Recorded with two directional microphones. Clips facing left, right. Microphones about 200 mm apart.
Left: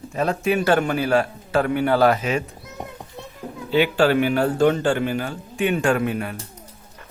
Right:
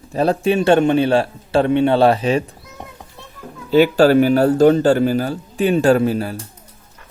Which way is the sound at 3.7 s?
40° right (ahead or behind).